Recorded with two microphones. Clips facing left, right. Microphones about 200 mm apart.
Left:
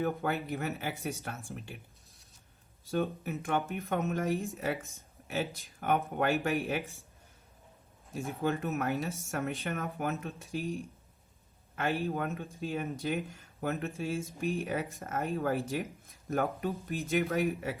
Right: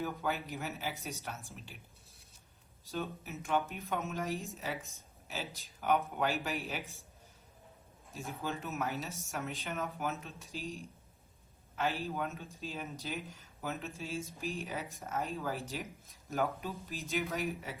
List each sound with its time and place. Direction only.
0.0 s speech: 55° left (ahead or behind)
2.9 s speech: 55° left (ahead or behind)
8.4 s speech: 55° left (ahead or behind)
11.8 s speech: 55° left (ahead or behind)